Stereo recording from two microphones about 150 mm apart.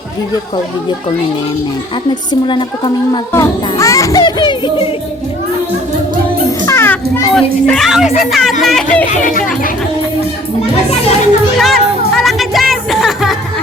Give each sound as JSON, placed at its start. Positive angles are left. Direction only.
{"t": 2.0, "sound": "a woman's voice", "side_deg": 30}
{"t": 3.3, "sound": "a child's voice", "side_deg": 20}
{"t": 6.7, "sound": "children playing", "side_deg": 15}
{"t": 7.3, "sound": "speech", "side_deg": 0}
{"t": 9.0, "sound": "speech", "side_deg": 60}
{"t": 11.6, "sound": "music", "side_deg": 0}